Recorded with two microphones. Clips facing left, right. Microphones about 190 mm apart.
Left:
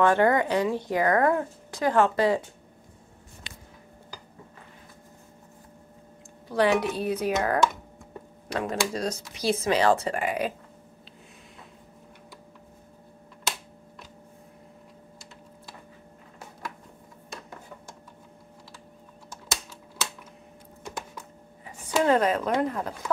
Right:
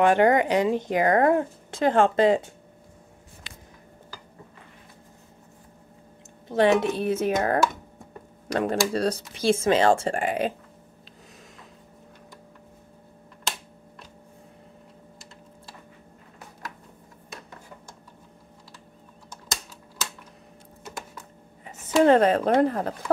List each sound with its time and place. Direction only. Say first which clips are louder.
0.0 s a woman's voice: right 2 dB; 20° right (ahead or behind)
6.5 s a woman's voice: right 3 dB; 25° right (ahead or behind)
8.5 s speech: right 4 dB; 35° right (ahead or behind)
9.1 s a woman's voice: right 4 dB; 25° right (ahead or behind)
21.6 s a sound: right 5 dB; 25° right (ahead or behind)
22.1 s speech: right 4 dB; 30° right (ahead or behind)